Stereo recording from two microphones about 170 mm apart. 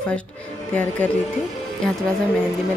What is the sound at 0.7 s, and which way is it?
Speech, 10° left (ahead or behind).